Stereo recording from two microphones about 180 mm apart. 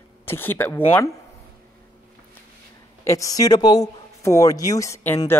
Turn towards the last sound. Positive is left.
turn(degrees=15)  # may be behind; listen again after turning